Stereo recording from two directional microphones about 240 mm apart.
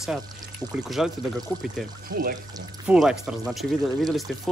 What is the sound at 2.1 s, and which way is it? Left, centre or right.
Speech, right.